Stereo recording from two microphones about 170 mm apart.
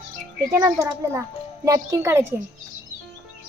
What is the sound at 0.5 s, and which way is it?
A child's voice, 15° right (ahead or behind).